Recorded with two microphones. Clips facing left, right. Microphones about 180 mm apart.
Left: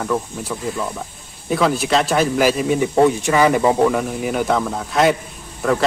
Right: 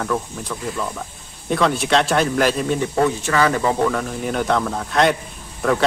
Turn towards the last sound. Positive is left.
turn(degrees=5)  # may be behind; listen again after turning